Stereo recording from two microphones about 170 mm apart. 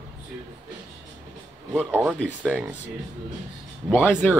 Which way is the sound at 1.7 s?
5° right (ahead or behind).